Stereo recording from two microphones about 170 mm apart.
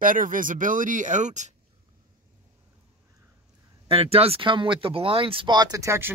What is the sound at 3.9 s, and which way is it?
Speech, 35° right (ahead or behind).